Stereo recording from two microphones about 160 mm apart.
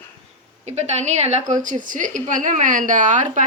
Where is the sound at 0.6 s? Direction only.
45° right (ahead or behind).